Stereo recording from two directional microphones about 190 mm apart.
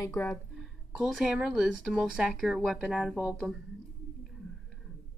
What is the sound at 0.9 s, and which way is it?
Speech, centre (ahead or behind).